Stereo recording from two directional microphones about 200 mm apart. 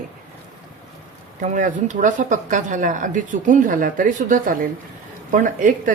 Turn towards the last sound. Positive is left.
turn(degrees=-40)  # may be behind; listen again after turning